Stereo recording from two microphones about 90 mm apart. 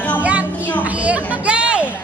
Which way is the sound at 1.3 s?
10° right (ahead or behind).